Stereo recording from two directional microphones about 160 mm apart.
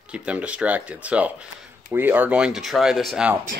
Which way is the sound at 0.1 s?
5° right (ahead or behind).